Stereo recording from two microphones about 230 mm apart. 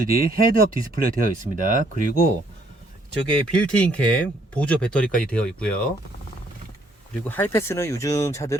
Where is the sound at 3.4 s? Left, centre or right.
Centre.